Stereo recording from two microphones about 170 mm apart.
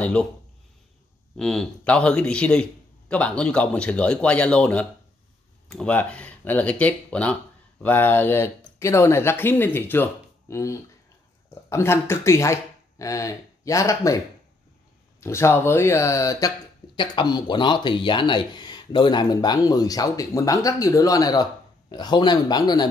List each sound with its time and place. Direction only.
0.0 s speech: 5° left (ahead or behind)
1.3 s a man's voice: 5° left (ahead or behind); by 22.8 s 25° left (ahead or behind)